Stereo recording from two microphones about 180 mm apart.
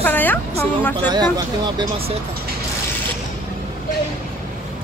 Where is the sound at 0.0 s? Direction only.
10° left (ahead or behind).